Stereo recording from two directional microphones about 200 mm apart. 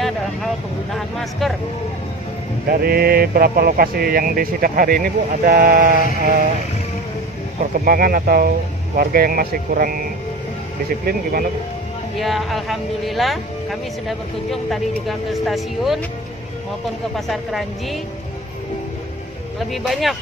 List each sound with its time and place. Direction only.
2.7 s speech: 50° right (ahead or behind)
7.7 s speech: 45° right (ahead or behind)
12.2 s speech: centre (ahead or behind)
17.1 s speech: centre (ahead or behind)
19.7 s speech: centre (ahead or behind)